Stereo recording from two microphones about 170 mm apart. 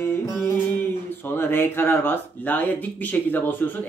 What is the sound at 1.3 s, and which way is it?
Speech, 10° left (ahead or behind).